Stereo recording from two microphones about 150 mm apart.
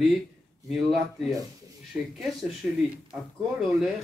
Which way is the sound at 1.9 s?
15° right (ahead or behind).